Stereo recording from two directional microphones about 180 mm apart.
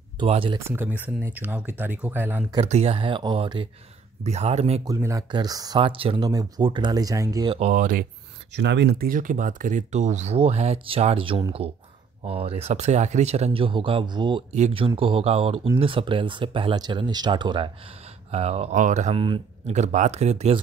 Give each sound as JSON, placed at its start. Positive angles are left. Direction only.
{"t": 0.2, "sound": "speech", "side_deg": -30}
{"t": 0.6, "sound": "speech", "side_deg": -10}
{"t": 2.6, "sound": "speech", "side_deg": -35}
{"t": 4.8, "sound": "speech", "side_deg": -20}
{"t": 7.5, "sound": "speech", "side_deg": -45}
{"t": 8.5, "sound": "speech", "side_deg": -70}
{"t": 19.1, "sound": "speech", "side_deg": -30}
{"t": 19.7, "sound": "speech", "side_deg": -40}